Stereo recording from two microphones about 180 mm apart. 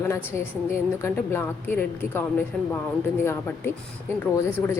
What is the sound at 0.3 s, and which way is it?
A woman's voice, 15° left (ahead or behind).